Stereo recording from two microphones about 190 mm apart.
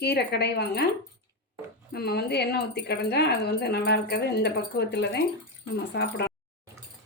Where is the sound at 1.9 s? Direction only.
55° left (ahead or behind).